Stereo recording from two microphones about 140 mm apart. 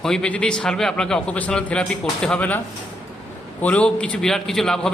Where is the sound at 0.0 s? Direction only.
5° left (ahead or behind).